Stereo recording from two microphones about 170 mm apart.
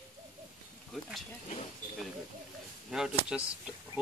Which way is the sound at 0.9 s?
Centre (ahead or behind).